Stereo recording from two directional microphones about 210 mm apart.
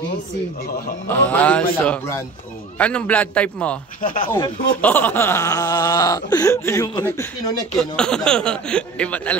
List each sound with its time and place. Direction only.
1.0 s speech: 10° left (ahead or behind)
7.8 s speech: 5° left (ahead or behind)